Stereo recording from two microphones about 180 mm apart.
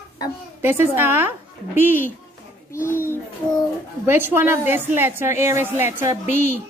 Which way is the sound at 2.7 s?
15° left (ahead or behind).